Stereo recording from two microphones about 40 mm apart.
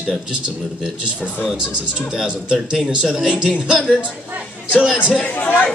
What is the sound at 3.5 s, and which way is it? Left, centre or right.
Speech, right.